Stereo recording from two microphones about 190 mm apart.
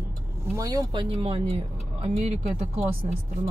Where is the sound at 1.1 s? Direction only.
30° right (ahead or behind).